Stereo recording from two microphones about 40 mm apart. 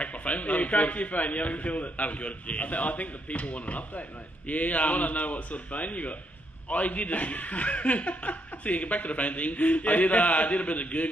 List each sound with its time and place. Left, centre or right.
0.0 s speech: left